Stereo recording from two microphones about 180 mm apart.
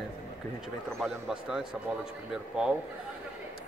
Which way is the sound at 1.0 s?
Centre (ahead or behind).